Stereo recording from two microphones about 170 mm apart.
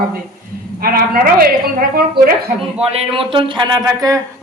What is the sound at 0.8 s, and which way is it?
A woman's voice, 60° right (ahead or behind).